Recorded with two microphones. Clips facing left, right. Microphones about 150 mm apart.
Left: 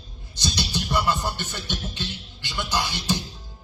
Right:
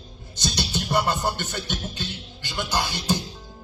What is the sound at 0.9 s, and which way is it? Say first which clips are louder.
Music: right 2 dB; 50° right (ahead or behind).